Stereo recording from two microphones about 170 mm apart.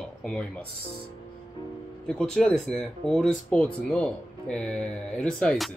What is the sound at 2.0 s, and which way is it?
Speech, 5° left (ahead or behind).